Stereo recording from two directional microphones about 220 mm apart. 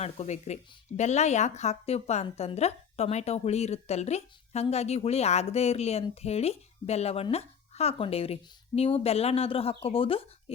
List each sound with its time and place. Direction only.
0.0 s speech: 30° left (ahead or behind)